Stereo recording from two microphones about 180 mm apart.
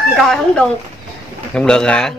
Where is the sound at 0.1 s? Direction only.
Centre (ahead or behind).